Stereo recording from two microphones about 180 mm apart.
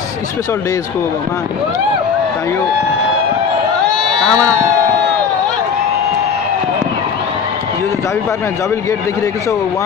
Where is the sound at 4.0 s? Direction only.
5° left (ahead or behind).